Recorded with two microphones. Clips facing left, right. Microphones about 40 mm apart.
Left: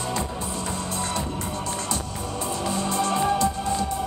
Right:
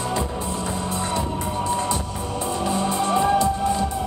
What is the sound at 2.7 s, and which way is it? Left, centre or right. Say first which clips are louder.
Music: right 2 dB; centre.